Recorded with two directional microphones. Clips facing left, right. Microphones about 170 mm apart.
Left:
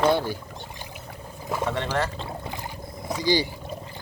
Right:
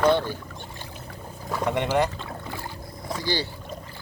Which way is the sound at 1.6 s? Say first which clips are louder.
Right 5 dB; 15° right (ahead or behind).